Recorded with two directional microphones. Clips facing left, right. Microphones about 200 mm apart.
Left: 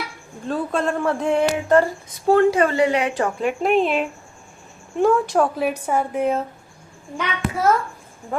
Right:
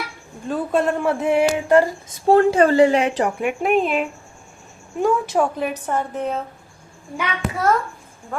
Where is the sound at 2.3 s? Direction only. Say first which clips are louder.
Right 2 dB; 30° right (ahead or behind).